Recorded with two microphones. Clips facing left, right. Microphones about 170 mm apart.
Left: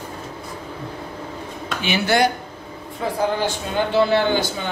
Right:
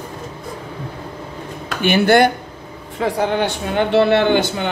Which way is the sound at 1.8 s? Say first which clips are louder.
Right 6 dB; 55° right (ahead or behind).